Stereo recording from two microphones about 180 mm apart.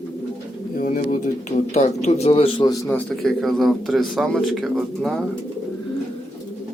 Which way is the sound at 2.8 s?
5° left (ahead or behind).